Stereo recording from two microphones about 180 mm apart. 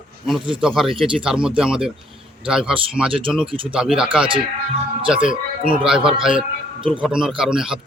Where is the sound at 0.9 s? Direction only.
30° right (ahead or behind).